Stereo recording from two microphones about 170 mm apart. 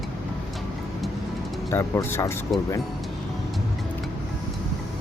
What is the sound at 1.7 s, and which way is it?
Speech, 15° left (ahead or behind).